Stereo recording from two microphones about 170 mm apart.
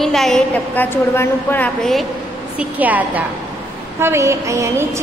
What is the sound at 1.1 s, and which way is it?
Speech, 15° left (ahead or behind).